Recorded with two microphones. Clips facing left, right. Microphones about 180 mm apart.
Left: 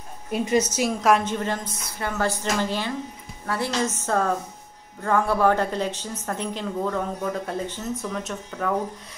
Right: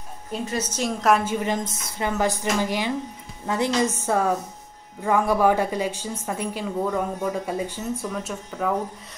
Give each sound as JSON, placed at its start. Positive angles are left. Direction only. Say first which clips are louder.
{"t": 0.3, "sound": "a woman's voice", "louder": "left 6 dB", "side_deg": 10}